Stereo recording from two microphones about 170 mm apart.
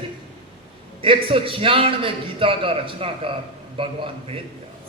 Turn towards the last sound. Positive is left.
turn(degrees=-30)  # may be behind; listen again after turning